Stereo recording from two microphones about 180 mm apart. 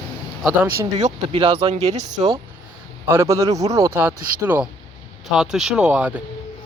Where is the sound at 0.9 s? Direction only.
35° right (ahead or behind).